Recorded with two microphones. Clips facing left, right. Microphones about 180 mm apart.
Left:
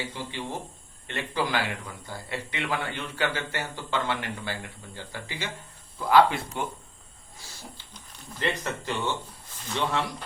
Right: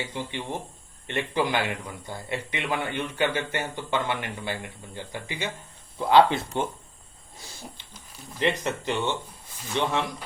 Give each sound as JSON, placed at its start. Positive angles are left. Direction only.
{"t": 0.1, "sound": "speech", "side_deg": -20}
{"t": 8.4, "sound": "speech", "side_deg": -20}